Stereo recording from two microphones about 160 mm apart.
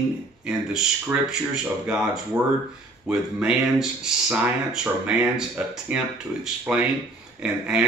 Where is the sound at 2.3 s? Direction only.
20° right (ahead or behind).